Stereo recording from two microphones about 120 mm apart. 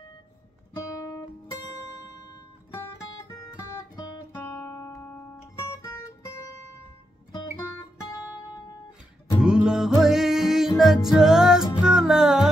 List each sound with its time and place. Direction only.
3.5 s music: 30° left (ahead or behind)
9.4 s music: 5° right (ahead or behind)